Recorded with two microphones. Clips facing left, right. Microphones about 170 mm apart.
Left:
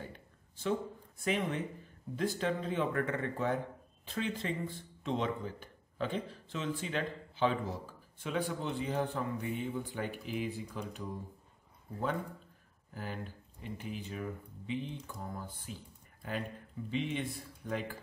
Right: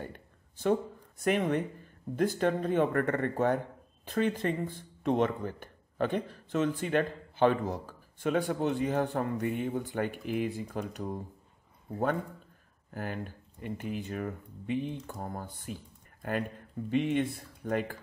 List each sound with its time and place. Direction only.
0.0 s a sound: 55° right (ahead or behind)
1.2 s speech: 55° right (ahead or behind)
9.4 s speech: 75° right (ahead or behind)
9.8 s speech: 60° right (ahead or behind)
12.9 s speech: 60° right (ahead or behind)